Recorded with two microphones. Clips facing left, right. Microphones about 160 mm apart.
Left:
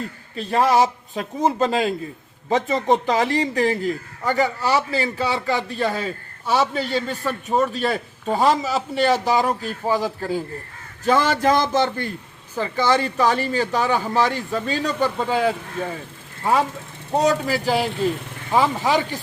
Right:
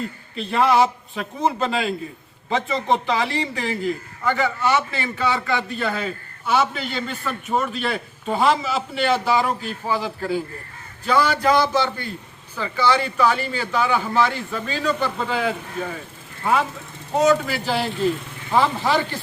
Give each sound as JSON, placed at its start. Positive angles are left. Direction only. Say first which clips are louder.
{"t": 0.3, "sound": "a man's voice", "louder": "even", "side_deg": 40}
{"t": 18.5, "sound": "speech", "louder": "left 1 dB", "side_deg": 15}